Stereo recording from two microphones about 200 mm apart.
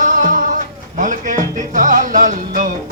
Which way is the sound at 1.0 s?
40° right (ahead or behind).